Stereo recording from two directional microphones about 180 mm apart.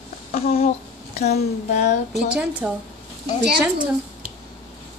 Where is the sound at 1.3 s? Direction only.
45° left (ahead or behind).